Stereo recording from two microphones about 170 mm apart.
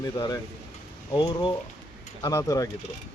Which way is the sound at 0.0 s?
20° left (ahead or behind).